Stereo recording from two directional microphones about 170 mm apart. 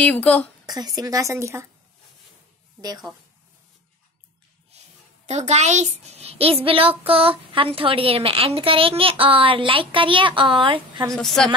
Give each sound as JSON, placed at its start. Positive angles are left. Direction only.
{"t": 0.0, "sound": "a woman's voice", "side_deg": 10}
{"t": 0.7, "sound": "a woman's voice", "side_deg": -20}
{"t": 2.8, "sound": "a woman's voice", "side_deg": -20}
{"t": 4.6, "sound": "a woman's voice", "side_deg": -40}
{"t": 11.1, "sound": "a woman's voice", "side_deg": 0}